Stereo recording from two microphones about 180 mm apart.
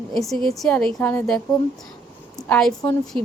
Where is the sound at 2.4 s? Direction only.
5° left (ahead or behind).